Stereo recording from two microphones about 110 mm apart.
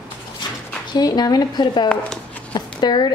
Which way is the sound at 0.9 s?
35° left (ahead or behind).